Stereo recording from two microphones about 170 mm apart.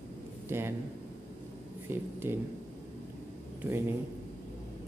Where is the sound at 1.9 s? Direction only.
15° right (ahead or behind).